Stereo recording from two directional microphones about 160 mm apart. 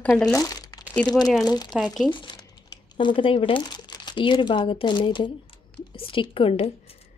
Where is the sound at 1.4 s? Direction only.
25° left (ahead or behind).